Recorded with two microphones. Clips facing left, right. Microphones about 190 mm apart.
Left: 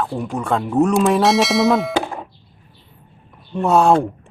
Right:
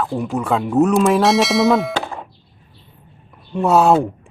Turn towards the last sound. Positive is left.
turn(degrees=-5)  # may be behind; listen again after turning